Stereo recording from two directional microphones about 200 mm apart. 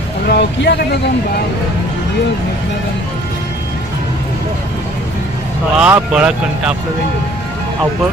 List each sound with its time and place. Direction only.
0.3 s speech: 55° left (ahead or behind)
5.7 s speech: 5° right (ahead or behind)